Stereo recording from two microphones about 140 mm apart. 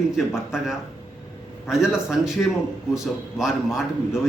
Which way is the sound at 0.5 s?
Centre (ahead or behind).